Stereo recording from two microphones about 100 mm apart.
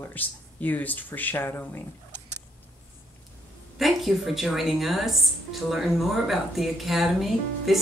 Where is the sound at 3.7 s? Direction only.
Centre (ahead or behind).